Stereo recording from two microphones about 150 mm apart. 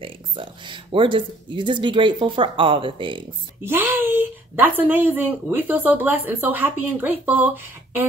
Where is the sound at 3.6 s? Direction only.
15° right (ahead or behind).